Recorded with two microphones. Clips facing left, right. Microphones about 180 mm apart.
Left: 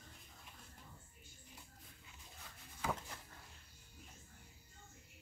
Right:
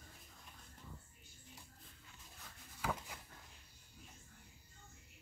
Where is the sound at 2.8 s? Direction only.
10° right (ahead or behind).